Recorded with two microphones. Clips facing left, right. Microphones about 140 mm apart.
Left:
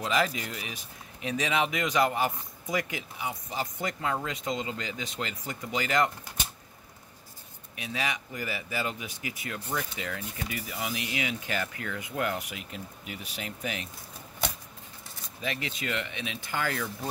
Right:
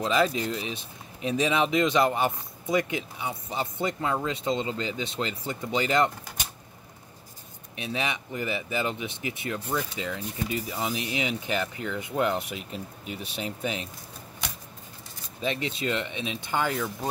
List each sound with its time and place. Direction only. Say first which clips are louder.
0.0 s speech: right 4 dB; 25° right (ahead or behind)
7.7 s speech: right 3 dB; 25° right (ahead or behind)
15.4 s speech: right 5 dB; 30° right (ahead or behind)